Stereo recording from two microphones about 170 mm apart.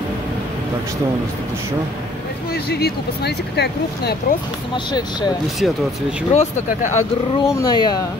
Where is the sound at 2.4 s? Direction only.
70° left (ahead or behind).